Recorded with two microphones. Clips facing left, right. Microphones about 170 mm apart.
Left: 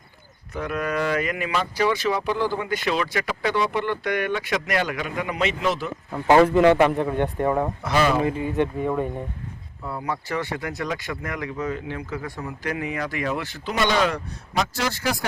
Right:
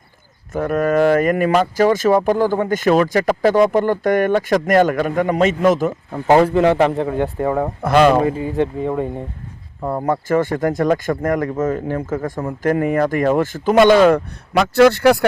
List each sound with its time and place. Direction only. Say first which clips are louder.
0.5 s speech: right 9 dB; 45° right (ahead or behind)
6.3 s speech: right 2 dB; 30° right (ahead or behind)
7.6 s speech: right 8 dB; 55° right (ahead or behind)
8.2 s speech: right 4 dB; 30° right (ahead or behind)
9.8 s speech: right 9 dB; 50° right (ahead or behind)
14.5 s speech: right 14 dB; 65° right (ahead or behind)